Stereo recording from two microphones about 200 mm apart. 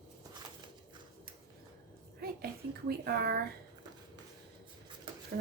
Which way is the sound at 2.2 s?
50° right (ahead or behind).